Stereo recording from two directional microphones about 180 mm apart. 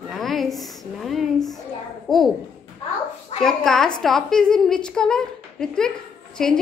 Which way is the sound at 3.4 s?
5° left (ahead or behind).